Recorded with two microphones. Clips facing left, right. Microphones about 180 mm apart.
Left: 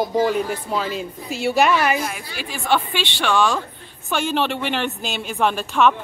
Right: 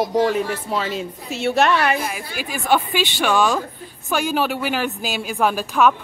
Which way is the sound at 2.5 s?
10° right (ahead or behind).